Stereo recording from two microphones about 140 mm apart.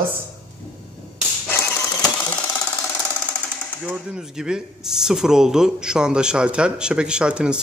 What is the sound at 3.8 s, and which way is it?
Speech, 5° right (ahead or behind).